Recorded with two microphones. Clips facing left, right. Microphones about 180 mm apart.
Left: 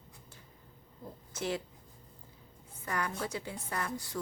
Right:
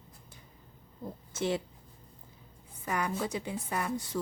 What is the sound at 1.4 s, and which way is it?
Speech, 25° right (ahead or behind).